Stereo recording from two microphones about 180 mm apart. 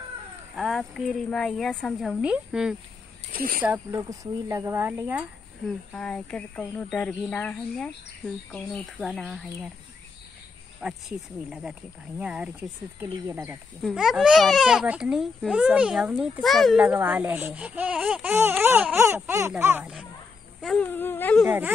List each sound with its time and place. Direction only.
0.6 s a woman's voice: centre (ahead or behind)
3.3 s speech: 55° right (ahead or behind)
3.6 s a child's voice: 10° right (ahead or behind)
5.9 s a woman's voice: 5° left (ahead or behind)
10.8 s a woman's voice: centre (ahead or behind)
20.6 s speech: 5° left (ahead or behind)
21.5 s a child's voice: 10° right (ahead or behind)